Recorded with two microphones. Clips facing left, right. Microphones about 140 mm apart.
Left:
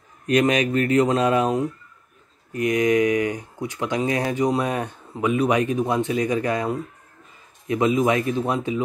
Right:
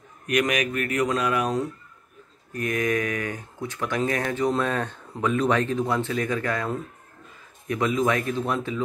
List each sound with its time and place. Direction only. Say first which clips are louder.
0.3 s speech: left 5 dB; 30° left (ahead or behind)